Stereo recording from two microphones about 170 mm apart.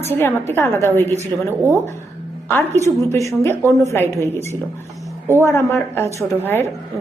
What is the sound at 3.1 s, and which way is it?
A woman's voice, 15° left (ahead or behind).